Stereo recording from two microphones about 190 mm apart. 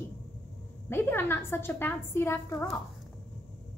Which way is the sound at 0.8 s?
10° left (ahead or behind).